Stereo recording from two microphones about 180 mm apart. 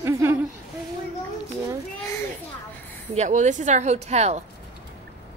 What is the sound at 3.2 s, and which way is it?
Speech, 45° right (ahead or behind).